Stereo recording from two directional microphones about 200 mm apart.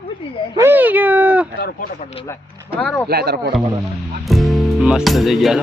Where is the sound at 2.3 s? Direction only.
15° left (ahead or behind).